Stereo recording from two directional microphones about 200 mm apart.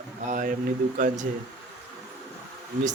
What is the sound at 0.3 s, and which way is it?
Speech, 40° right (ahead or behind).